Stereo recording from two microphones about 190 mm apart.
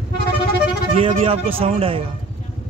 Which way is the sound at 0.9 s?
30° right (ahead or behind).